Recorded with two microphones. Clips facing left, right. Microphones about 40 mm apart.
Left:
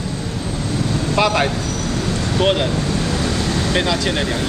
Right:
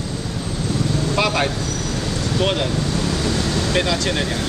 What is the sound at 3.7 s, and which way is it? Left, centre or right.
Speech, centre.